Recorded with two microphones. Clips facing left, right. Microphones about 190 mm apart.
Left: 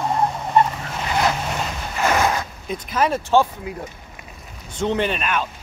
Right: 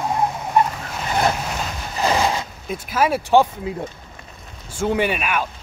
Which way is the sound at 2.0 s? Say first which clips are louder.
Even; 30° right (ahead or behind).